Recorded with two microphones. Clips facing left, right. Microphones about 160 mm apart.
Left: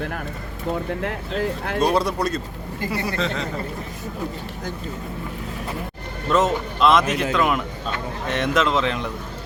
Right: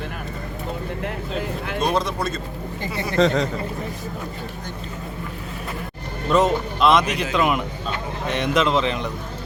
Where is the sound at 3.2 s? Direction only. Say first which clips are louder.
Right 11 dB; 40° right (ahead or behind).